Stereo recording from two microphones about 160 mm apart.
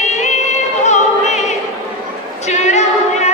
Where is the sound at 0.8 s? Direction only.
45° left (ahead or behind).